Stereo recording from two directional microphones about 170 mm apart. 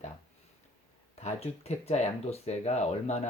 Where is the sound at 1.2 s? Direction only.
40° left (ahead or behind).